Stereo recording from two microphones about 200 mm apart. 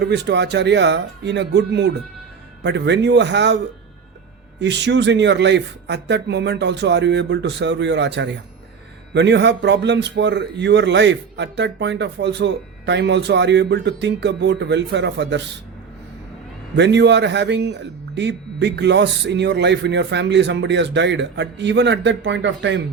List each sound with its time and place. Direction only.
0.0 s a man's voice: 60° right (ahead or behind)
4.6 s a man's voice: 60° right (ahead or behind)
16.7 s a man's voice: 60° right (ahead or behind)